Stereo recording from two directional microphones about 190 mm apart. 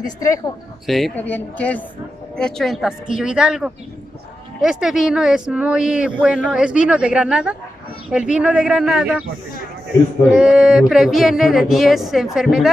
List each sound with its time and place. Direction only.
0.0 s speech: 20° left (ahead or behind)
0.8 s speech: centre (ahead or behind)
10.3 s speech: 5° right (ahead or behind)